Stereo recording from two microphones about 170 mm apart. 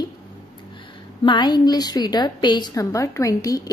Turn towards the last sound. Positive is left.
turn(degrees=20)  # may be behind; listen again after turning